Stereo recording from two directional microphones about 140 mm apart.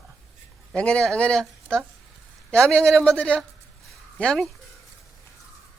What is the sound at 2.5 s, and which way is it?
Speech, 5° left (ahead or behind).